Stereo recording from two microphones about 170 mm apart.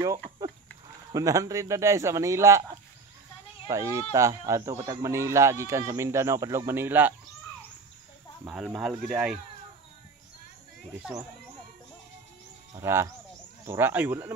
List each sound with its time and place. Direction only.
1.1 s speech: 20° right (ahead or behind)
3.7 s speech: 20° right (ahead or behind)
8.5 s speech: 5° right (ahead or behind)
10.9 s speech: 5° right (ahead or behind)
12.7 s speech: 15° right (ahead or behind)